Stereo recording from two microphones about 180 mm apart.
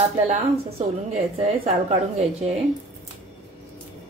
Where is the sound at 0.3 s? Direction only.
35° right (ahead or behind).